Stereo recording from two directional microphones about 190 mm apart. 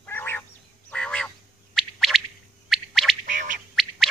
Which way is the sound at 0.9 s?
5° left (ahead or behind).